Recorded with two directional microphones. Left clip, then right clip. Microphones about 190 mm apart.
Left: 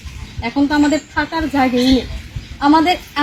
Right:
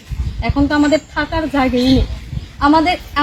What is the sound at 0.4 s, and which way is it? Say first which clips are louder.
A woman's voice: even; centre (ahead or behind).